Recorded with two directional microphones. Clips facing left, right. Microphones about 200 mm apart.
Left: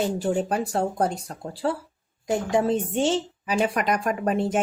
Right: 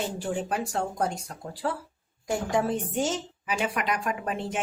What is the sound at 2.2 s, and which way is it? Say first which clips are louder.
A woman's voice: left 4 dB; 20° left (ahead or behind).